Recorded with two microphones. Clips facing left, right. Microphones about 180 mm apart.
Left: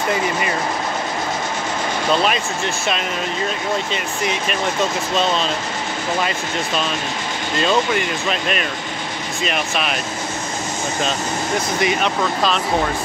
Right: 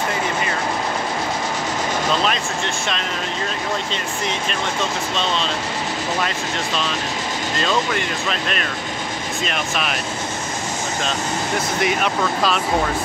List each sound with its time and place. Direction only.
3.9 s speech: 10° left (ahead or behind)
8.3 s speech: 5° left (ahead or behind)
11.8 s speech: 5° right (ahead or behind)